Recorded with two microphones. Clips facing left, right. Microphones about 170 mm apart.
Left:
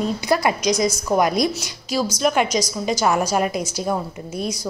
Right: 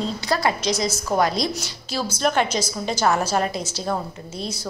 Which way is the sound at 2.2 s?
10° left (ahead or behind).